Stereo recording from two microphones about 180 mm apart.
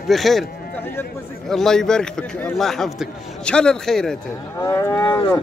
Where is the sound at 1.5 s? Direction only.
Centre (ahead or behind).